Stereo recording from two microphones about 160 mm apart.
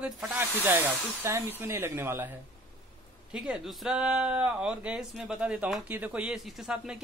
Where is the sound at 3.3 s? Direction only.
5° right (ahead or behind).